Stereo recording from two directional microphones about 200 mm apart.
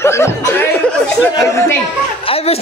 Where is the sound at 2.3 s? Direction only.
30° left (ahead or behind).